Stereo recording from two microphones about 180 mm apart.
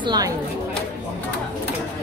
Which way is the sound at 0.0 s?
25° right (ahead or behind).